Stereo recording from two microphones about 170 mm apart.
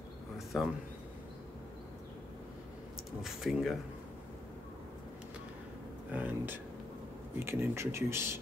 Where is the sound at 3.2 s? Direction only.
Centre (ahead or behind).